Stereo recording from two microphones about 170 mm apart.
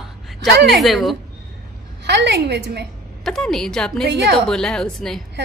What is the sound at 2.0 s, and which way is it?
Speech, 80° right.